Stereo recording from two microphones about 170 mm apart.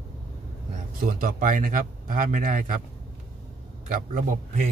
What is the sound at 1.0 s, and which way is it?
Speech, 55° right (ahead or behind).